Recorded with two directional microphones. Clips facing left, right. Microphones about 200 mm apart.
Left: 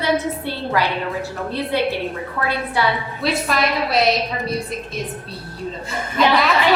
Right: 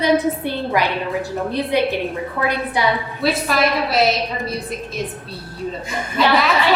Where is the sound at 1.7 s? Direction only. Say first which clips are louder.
Right 1 dB; 15° right (ahead or behind).